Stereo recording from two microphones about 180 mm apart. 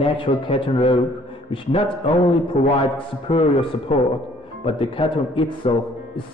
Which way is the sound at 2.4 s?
30° left (ahead or behind).